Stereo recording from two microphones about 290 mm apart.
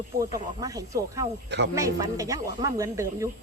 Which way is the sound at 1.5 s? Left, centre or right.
Right.